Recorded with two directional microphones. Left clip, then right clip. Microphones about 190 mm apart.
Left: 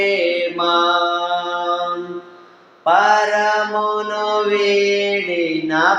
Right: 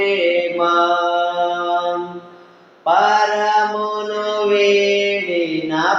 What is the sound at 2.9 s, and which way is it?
Mantra, 30° left (ahead or behind).